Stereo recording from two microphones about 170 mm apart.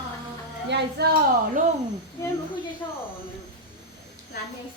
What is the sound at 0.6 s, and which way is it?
Speech, 85° right.